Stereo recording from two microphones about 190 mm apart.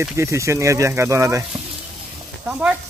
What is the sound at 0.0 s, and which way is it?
Speech, 15° right (ahead or behind).